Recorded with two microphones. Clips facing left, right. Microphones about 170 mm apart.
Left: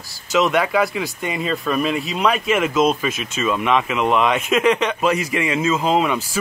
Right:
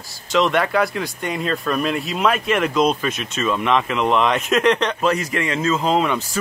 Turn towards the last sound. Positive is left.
turn(degrees=5)  # may be behind; listen again after turning